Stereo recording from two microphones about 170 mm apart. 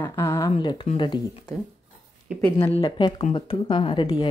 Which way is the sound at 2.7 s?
30° left (ahead or behind).